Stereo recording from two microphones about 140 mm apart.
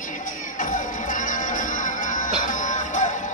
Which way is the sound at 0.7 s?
70° left (ahead or behind).